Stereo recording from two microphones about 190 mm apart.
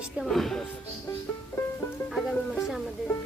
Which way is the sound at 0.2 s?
Centre (ahead or behind).